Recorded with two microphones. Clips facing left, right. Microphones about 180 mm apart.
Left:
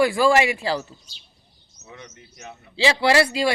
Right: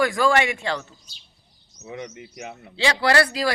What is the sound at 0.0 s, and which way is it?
Speech, 30° left (ahead or behind).